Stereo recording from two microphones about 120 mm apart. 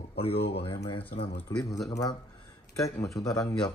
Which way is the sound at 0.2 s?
50° left (ahead or behind).